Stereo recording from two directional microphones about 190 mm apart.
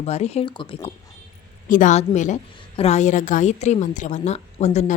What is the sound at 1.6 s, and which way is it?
A woman's voice, 45° left (ahead or behind).